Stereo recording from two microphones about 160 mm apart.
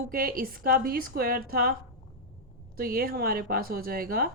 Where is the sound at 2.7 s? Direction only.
70° right (ahead or behind).